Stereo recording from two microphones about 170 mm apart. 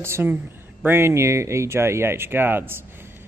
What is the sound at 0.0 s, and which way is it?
Speech, 15° right (ahead or behind).